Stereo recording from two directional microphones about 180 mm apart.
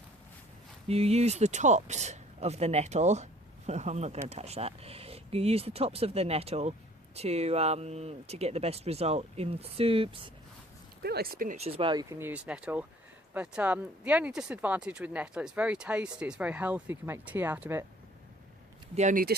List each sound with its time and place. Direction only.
0.9 s speech: 35° right (ahead or behind)
11.0 s speech: 60° right (ahead or behind)
11.5 s speech: 30° right (ahead or behind); by 17.8 s 10° right (ahead or behind)
18.9 s speech: 45° right (ahead or behind)